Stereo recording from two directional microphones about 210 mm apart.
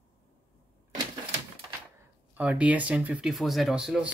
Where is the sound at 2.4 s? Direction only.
5° right (ahead or behind).